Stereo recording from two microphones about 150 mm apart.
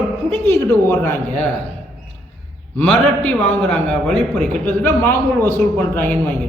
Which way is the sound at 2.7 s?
10° left (ahead or behind).